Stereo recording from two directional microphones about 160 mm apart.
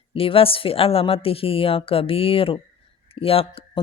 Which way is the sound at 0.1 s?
35° left (ahead or behind).